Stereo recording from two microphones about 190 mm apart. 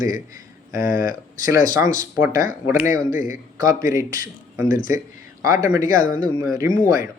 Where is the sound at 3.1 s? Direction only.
45° left (ahead or behind).